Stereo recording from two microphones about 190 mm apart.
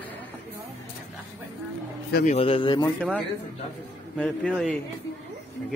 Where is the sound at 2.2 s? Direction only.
30° left (ahead or behind).